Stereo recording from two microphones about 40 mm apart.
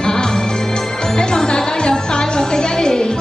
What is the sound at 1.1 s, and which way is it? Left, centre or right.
Music, left.